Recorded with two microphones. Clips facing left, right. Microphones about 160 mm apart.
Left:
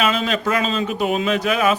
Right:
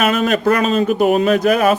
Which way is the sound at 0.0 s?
50° right (ahead or behind).